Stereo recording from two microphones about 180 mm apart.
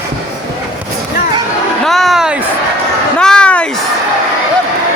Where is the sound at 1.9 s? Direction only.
Centre (ahead or behind).